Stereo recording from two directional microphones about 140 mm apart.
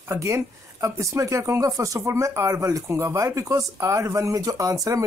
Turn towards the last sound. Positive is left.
turn(degrees=-25)  # may be behind; listen again after turning